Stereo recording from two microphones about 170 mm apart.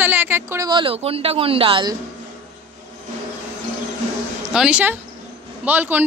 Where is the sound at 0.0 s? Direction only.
10° right (ahead or behind).